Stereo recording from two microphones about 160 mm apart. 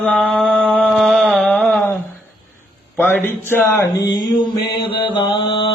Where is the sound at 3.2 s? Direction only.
15° left (ahead or behind).